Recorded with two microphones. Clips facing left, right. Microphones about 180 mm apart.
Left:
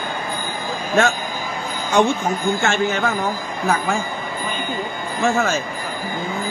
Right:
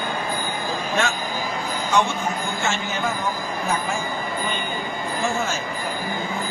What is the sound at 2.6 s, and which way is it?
Speech, 60° left (ahead or behind).